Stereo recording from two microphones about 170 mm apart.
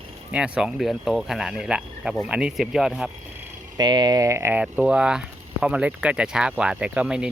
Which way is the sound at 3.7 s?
25° right (ahead or behind).